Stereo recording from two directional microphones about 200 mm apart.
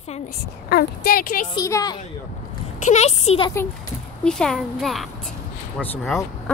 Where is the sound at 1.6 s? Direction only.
15° left (ahead or behind).